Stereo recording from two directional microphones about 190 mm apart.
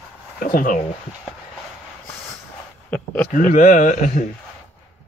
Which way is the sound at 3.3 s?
45° left (ahead or behind).